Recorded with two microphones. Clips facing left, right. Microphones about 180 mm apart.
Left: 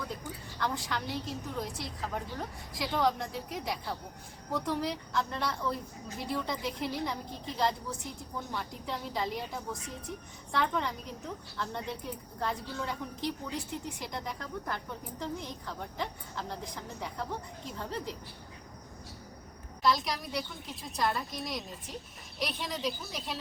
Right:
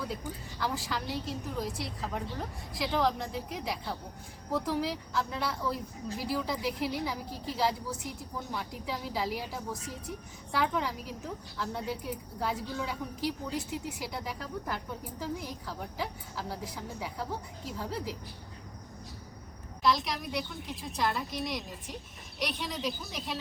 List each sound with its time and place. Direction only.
0.6 s a woman's voice: 5° right (ahead or behind)
19.8 s a woman's voice: centre (ahead or behind)